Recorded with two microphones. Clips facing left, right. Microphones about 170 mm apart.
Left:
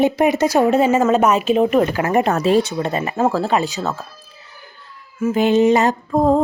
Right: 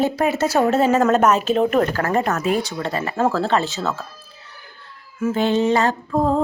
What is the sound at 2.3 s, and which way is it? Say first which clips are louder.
Mantra: left 5 dB; 30° left (ahead or behind).